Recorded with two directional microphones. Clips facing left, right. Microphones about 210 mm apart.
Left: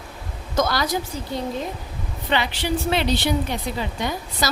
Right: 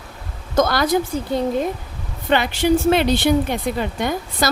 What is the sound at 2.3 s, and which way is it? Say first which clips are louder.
A woman's voice: right 7 dB; 50° right (ahead or behind).